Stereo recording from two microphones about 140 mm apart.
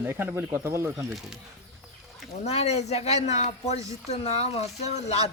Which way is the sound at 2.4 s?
50° left (ahead or behind).